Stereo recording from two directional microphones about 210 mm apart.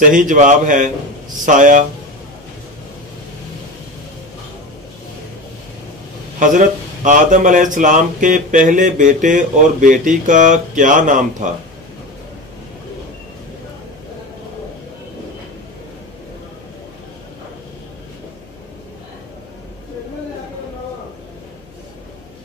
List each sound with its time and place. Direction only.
0.0 s speech: 40° right (ahead or behind)
6.4 s speech: 35° right (ahead or behind)